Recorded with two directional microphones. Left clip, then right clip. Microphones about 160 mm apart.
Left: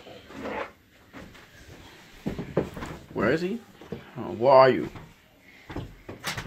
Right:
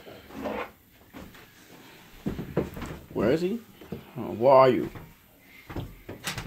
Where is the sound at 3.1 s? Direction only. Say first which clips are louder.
Even; 15° right (ahead or behind).